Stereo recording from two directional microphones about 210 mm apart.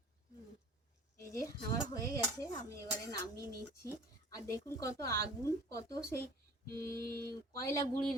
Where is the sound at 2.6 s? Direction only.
15° left (ahead or behind).